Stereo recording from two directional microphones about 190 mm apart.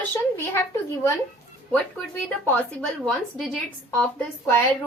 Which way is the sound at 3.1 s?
5° left (ahead or behind).